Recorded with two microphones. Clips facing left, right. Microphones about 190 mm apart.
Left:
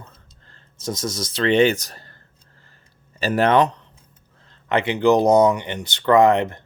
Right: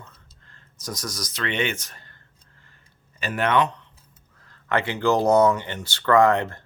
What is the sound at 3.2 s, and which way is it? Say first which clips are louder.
Speech: left 5 dB; 35° left (ahead or behind).